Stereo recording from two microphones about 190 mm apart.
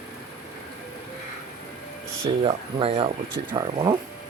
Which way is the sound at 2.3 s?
30° right (ahead or behind).